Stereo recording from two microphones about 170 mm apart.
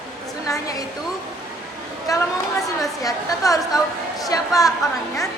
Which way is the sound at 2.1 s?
20° left (ahead or behind).